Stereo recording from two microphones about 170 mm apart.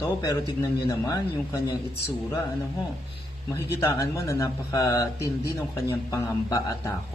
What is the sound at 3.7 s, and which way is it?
Speech, 15° left (ahead or behind).